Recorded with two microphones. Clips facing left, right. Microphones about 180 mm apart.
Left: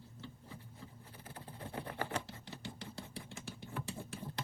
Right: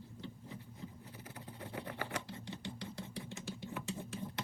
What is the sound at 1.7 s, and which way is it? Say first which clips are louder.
Sewing machine: left 2 dB; 30° left (ahead or behind).